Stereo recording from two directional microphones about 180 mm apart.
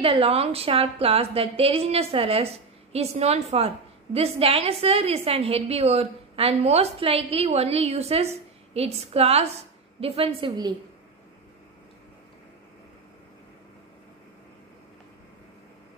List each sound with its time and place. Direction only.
0.0 s a woman's voice: 30° right (ahead or behind)